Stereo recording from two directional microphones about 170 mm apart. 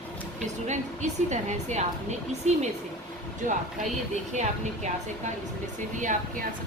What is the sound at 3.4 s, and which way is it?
A woman's voice, 50° right (ahead or behind).